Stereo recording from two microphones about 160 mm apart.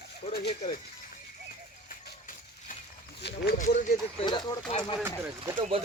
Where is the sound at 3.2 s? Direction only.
90° left.